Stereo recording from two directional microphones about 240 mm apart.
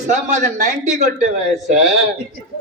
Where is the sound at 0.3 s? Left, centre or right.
Right.